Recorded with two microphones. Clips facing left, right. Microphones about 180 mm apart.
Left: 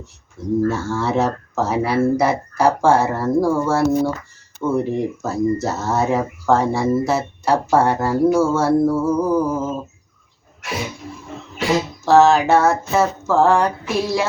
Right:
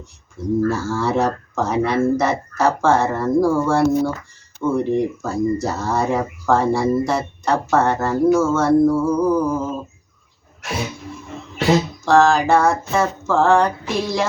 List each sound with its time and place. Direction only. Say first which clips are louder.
0.4 s speech: even; centre (ahead or behind)
12.0 s speech: left 2 dB; 5° left (ahead or behind)